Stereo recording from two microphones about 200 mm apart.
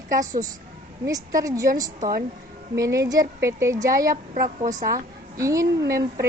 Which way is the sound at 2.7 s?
15° right (ahead or behind).